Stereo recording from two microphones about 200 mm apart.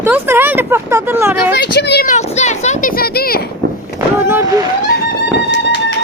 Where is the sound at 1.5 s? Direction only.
55° left (ahead or behind).